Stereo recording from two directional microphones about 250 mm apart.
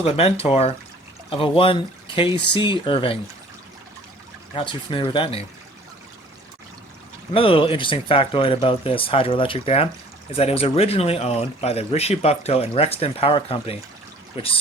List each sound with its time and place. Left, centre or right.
0.0 s speech: left
4.5 s speech: centre
7.3 s speech: left